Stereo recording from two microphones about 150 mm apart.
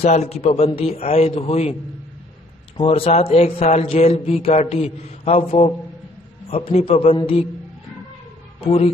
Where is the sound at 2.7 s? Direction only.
40° left (ahead or behind).